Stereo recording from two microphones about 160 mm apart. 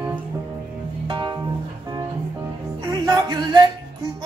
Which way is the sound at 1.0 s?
30° right (ahead or behind).